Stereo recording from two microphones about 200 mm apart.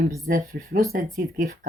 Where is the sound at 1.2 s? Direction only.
55° right (ahead or behind).